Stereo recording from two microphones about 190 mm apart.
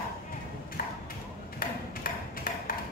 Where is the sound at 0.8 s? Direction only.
50° left (ahead or behind).